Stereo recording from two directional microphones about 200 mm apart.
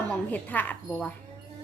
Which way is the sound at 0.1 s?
10° left (ahead or behind).